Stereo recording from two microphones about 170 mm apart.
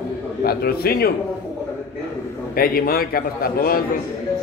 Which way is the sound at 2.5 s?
60° left (ahead or behind).